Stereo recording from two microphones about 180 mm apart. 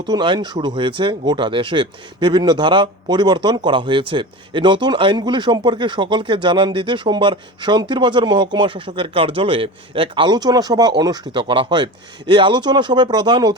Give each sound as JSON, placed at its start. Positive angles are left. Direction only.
{"t": 0.0, "sound": "speech", "side_deg": -25}